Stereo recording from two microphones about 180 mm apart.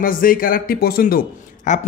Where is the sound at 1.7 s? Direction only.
40° left (ahead or behind).